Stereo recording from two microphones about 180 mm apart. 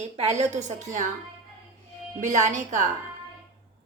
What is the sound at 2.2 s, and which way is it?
Speech, 40° right (ahead or behind).